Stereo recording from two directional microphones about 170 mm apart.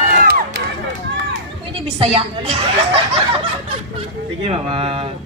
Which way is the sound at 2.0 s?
35° right (ahead or behind).